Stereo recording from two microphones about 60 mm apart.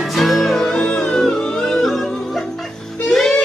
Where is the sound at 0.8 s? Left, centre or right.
Centre.